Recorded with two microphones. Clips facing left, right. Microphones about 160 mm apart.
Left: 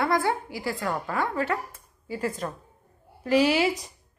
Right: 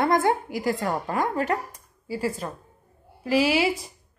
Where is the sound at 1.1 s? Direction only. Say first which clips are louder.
Right 2 dB; 40° right (ahead or behind).